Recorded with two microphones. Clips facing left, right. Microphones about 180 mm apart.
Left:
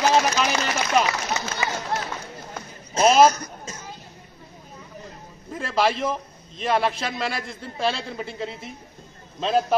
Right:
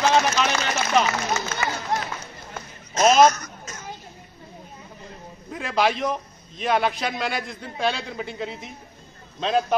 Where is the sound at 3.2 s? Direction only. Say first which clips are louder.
Even; 30° left (ahead or behind).